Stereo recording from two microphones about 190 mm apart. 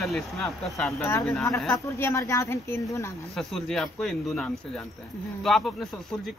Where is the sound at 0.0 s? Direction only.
Centre (ahead or behind).